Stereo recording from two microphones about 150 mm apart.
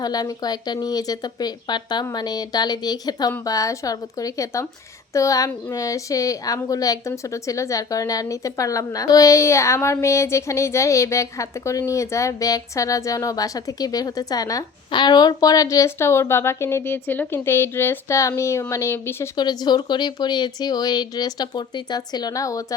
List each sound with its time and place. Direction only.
0.0 s a woman's voice: 25° left (ahead or behind)
19.4 s a woman's voice: 30° left (ahead or behind)